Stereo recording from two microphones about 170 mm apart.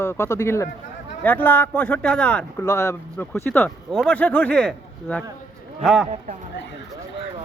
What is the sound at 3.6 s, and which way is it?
Speech, 5° left (ahead or behind).